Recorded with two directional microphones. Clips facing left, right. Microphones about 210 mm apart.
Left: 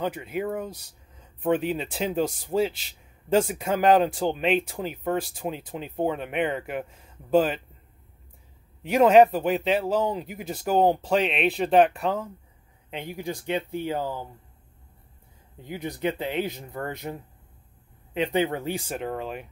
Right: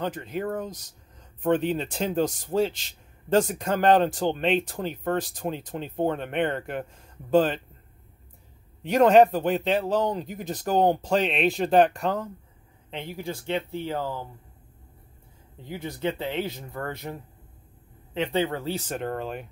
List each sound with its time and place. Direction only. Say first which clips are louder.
0.0 s speech: left 1 dB; 10° left (ahead or behind)
8.8 s speech: even; 5° left (ahead or behind)
12.9 s speech: left 1 dB; 15° left (ahead or behind)
15.6 s speech: left 1 dB; 20° left (ahead or behind); by 19.4 s centre (ahead or behind)